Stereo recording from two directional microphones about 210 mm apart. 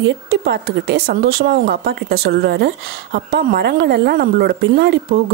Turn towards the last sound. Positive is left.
turn(degrees=-50)  # may be behind; listen again after turning